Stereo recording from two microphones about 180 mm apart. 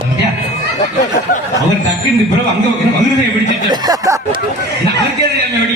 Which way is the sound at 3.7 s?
20° right (ahead or behind).